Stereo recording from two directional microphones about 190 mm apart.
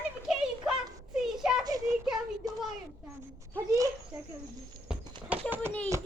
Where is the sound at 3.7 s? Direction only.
20° right (ahead or behind).